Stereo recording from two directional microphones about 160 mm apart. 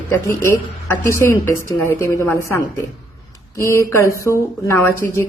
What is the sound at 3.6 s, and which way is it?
Speech, 20° left (ahead or behind).